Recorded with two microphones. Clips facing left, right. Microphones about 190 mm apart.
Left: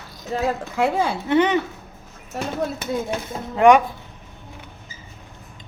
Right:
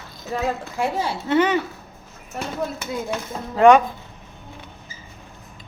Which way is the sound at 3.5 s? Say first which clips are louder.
Right 1 dB; 15° left (ahead or behind).